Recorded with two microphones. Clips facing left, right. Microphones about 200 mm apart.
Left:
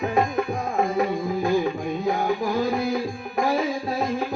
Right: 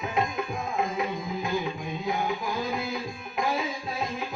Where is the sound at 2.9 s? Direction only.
50° left (ahead or behind).